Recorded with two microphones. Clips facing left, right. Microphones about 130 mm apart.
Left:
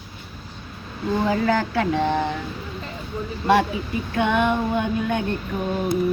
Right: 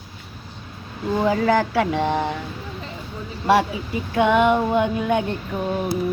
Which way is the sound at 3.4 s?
15° right (ahead or behind).